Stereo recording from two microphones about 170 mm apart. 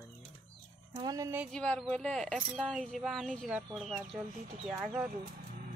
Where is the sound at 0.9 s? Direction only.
20° right (ahead or behind).